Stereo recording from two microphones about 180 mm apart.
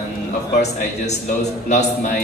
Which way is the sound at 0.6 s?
40° left (ahead or behind).